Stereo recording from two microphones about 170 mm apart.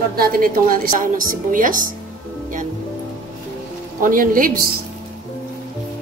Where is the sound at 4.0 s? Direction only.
55° right (ahead or behind).